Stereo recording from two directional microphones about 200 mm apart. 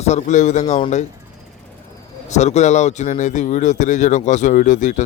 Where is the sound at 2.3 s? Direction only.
35° left (ahead or behind).